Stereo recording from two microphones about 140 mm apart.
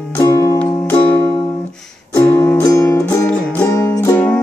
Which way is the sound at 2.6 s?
20° left (ahead or behind).